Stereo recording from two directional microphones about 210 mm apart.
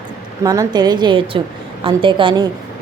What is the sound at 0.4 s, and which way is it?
Speech, 15° right (ahead or behind).